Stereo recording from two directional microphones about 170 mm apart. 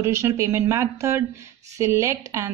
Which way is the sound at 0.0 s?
15° right (ahead or behind).